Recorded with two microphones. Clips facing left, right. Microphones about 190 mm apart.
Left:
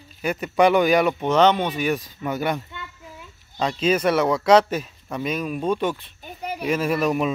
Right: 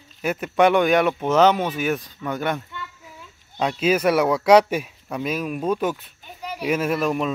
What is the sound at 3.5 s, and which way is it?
Speech, 5° right (ahead or behind).